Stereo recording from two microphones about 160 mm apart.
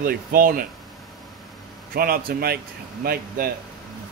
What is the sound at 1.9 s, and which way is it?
Speech, 70° right (ahead or behind).